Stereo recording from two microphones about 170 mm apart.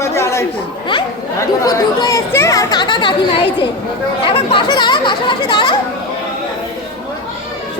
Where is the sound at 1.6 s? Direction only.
20° left (ahead or behind).